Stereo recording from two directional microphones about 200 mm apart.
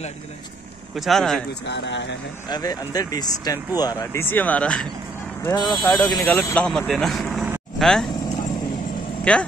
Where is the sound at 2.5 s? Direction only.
20° left (ahead or behind).